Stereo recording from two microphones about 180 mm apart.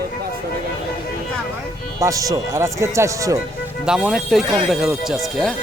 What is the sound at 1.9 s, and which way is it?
Speech, 20° right (ahead or behind).